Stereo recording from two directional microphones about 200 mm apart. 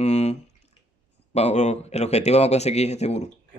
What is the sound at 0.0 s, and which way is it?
Drip, 35° left (ahead or behind).